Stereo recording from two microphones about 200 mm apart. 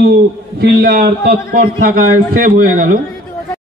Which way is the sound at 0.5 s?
55° right (ahead or behind).